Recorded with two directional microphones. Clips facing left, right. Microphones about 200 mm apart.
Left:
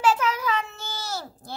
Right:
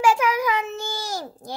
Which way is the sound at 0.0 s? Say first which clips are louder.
Right 3 dB; 10° right (ahead or behind).